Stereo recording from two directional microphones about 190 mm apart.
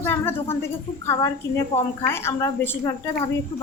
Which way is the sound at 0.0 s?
10° left (ahead or behind).